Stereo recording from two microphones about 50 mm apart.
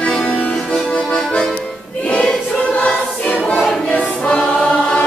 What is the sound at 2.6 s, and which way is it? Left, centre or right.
Choir, left.